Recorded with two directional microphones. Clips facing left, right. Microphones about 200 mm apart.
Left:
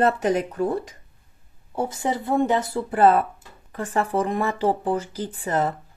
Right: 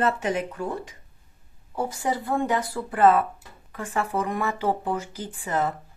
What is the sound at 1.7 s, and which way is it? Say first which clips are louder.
Speech: left 2 dB; 25° left (ahead or behind).